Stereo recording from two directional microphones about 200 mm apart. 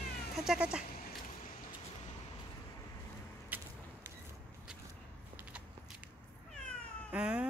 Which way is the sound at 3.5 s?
10° right (ahead or behind).